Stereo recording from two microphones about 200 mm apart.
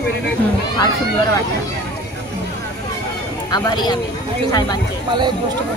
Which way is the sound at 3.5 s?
20° left (ahead or behind).